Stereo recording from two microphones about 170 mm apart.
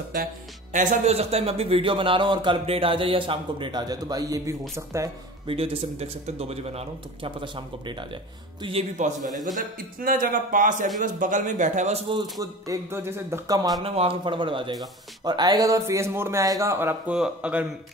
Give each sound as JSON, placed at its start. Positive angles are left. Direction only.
{"t": 0.7, "sound": "a man's voice", "side_deg": -45}
{"t": 5.5, "sound": "a man's voice", "side_deg": -35}
{"t": 8.9, "sound": "speech", "side_deg": -45}
{"t": 12.1, "sound": "speech", "side_deg": -25}
{"t": 13.8, "sound": "speech", "side_deg": -35}